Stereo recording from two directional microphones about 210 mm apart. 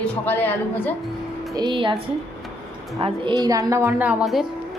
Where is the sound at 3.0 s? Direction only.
20° right (ahead or behind); by 4.5 s centre (ahead or behind).